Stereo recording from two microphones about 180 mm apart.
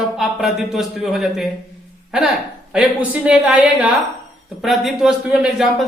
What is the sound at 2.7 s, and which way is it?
Speech, 5° right (ahead or behind).